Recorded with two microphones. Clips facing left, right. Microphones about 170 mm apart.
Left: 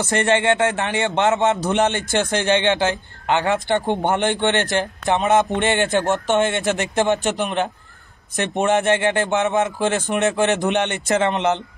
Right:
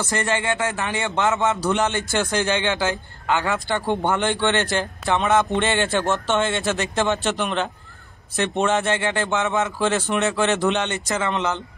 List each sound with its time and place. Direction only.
0.0 s a man's voice: 25° left (ahead or behind)